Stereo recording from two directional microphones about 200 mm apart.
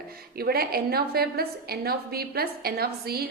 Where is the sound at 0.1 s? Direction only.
50° right (ahead or behind).